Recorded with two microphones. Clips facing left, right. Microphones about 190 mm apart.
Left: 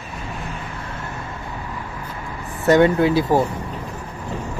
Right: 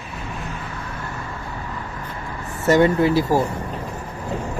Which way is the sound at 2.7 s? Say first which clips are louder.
Left 1 dB; centre (ahead or behind).